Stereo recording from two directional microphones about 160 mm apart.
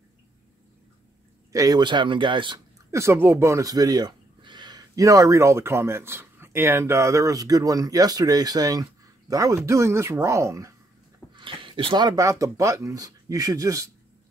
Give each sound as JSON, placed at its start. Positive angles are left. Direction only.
{"t": 1.5, "sound": "speech", "side_deg": -20}
{"t": 2.9, "sound": "speech", "side_deg": -15}
{"t": 11.3, "sound": "speech", "side_deg": -30}